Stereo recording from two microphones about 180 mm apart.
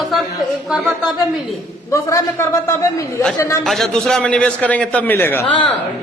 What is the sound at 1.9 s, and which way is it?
A man's voice, 15° left (ahead or behind).